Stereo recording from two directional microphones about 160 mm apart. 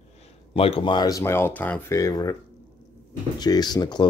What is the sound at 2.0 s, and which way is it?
Speech, 20° left (ahead or behind).